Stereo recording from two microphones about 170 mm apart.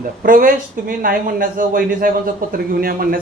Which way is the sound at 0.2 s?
55° right (ahead or behind).